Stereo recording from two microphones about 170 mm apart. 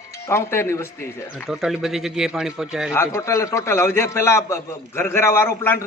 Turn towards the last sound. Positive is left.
turn(degrees=15)  # may be behind; listen again after turning